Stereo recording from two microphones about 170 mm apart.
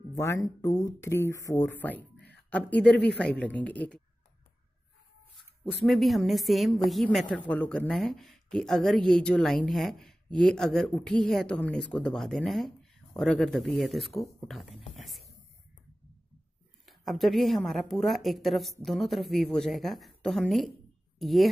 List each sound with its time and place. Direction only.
0.2 s speech: 20° left (ahead or behind)
2.9 s speech: 80° left
3.2 s speech: 5° left (ahead or behind)
5.6 s a woman's voice: centre (ahead or behind)
15.0 s a sound: centre (ahead or behind)
16.8 s a woman's voice: centre (ahead or behind)